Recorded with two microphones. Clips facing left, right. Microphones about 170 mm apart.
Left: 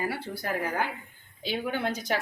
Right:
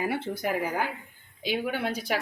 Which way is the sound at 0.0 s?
20° right (ahead or behind).